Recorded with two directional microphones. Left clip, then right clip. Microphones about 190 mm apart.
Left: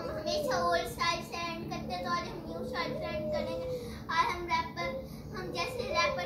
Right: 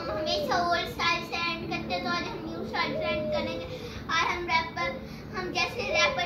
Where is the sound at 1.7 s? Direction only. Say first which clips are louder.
Right 4 dB; 25° left (ahead or behind).